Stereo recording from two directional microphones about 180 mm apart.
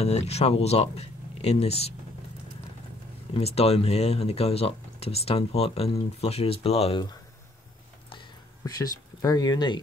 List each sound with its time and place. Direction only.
0.0 s speech: 35° left (ahead or behind)
3.3 s speech: 35° left (ahead or behind)
8.1 s a sound: 25° left (ahead or behind)